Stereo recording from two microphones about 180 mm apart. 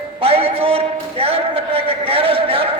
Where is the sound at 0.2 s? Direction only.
30° right (ahead or behind).